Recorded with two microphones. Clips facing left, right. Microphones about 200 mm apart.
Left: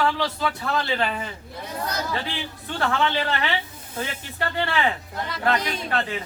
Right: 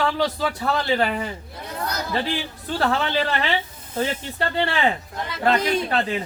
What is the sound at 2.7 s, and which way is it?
Speech, 35° right (ahead or behind).